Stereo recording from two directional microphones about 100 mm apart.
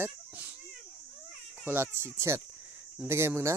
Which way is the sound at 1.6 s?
25° right (ahead or behind).